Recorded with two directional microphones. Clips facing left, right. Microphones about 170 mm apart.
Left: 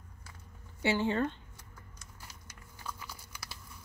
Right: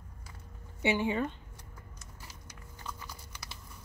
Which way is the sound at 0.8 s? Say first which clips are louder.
Even; 15° right (ahead or behind).